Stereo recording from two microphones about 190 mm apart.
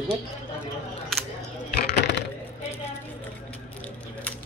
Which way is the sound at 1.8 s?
60° left (ahead or behind).